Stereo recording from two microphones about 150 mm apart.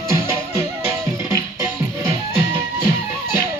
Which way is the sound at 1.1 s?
15° right (ahead or behind).